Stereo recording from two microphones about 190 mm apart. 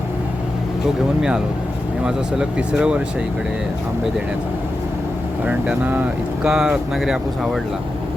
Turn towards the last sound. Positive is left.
turn(degrees=0)  # may be behind; listen again after turning